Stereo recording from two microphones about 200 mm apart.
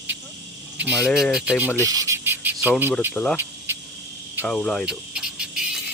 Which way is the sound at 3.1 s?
5° left (ahead or behind).